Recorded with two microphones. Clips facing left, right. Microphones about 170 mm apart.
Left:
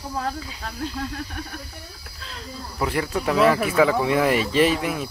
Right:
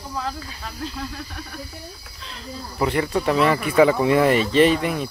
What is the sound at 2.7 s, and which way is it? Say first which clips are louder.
Speech: right 3 dB; centre (ahead or behind).